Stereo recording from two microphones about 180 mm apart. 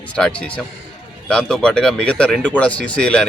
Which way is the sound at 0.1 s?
5° left (ahead or behind).